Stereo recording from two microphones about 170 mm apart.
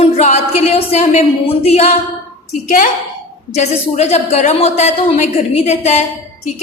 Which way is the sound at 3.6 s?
40° left (ahead or behind).